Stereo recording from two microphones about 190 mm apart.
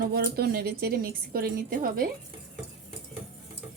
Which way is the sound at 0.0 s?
55° right (ahead or behind).